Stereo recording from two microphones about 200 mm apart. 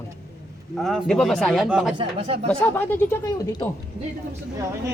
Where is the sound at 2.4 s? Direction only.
10° left (ahead or behind).